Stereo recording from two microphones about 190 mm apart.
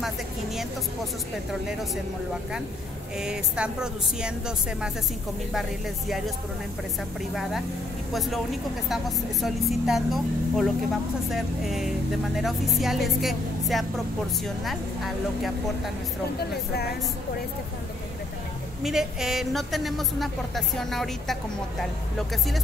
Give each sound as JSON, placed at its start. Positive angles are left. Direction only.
{"t": 3.2, "sound": "a woman's voice", "side_deg": -5}
{"t": 8.1, "sound": "a woman's voice", "side_deg": 0}
{"t": 16.3, "sound": "speech", "side_deg": 55}
{"t": 18.8, "sound": "a woman's voice", "side_deg": 0}